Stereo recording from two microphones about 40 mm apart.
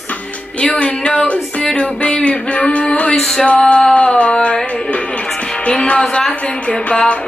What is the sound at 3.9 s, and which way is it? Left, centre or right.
Music, left.